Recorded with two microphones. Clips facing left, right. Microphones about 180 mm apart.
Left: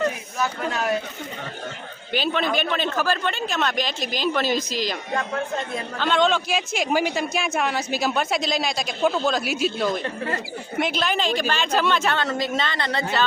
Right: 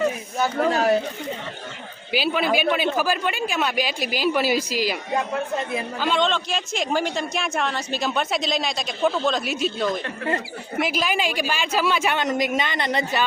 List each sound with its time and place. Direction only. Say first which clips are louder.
0.7 s speech: right 7 dB; 35° right (ahead or behind)
2.1 s speech: right 2 dB; 5° right (ahead or behind)